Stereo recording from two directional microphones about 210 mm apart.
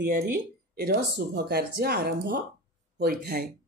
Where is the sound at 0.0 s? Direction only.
45° right (ahead or behind).